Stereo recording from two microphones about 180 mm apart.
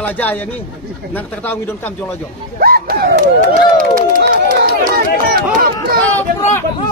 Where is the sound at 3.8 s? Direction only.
50° right (ahead or behind).